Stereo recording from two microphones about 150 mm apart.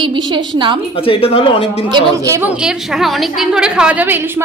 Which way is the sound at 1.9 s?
30° right (ahead or behind).